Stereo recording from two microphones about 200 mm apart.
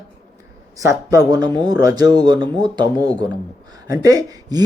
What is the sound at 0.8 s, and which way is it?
Speech, 15° right (ahead or behind).